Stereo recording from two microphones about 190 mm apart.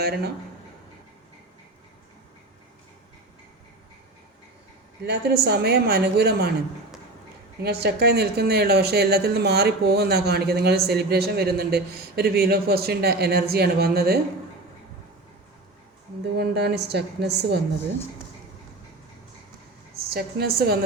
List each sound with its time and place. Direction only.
5.0 s speech: 60° right (ahead or behind)
7.6 s speech: 60° right (ahead or behind)
16.4 s speech: 60° right (ahead or behind)
20.1 s speech: 55° right (ahead or behind)